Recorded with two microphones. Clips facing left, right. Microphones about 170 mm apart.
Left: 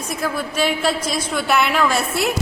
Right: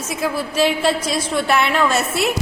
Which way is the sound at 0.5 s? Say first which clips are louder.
Right 3 dB; 30° right (ahead or behind).